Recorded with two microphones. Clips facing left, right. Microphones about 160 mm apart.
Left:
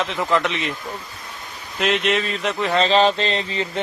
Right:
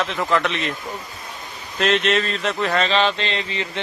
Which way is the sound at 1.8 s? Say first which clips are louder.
Right 1 dB; 10° left (ahead or behind).